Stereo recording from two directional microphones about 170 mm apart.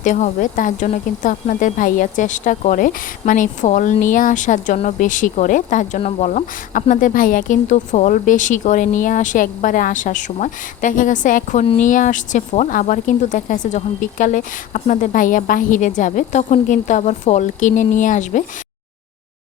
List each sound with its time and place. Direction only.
0.0 s speech: 50° left (ahead or behind)